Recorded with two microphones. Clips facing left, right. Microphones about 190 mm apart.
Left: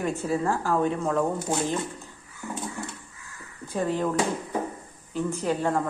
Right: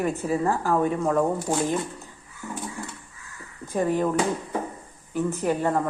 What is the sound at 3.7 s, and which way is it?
Speech, 15° right (ahead or behind).